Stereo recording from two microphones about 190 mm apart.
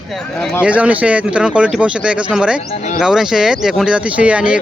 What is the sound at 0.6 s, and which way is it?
Speech, 5° right (ahead or behind).